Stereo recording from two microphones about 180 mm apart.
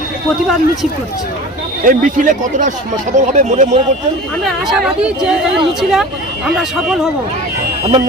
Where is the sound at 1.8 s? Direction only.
50° right (ahead or behind).